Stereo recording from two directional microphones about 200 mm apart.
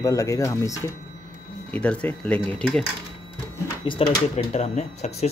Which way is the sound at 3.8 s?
30° left (ahead or behind).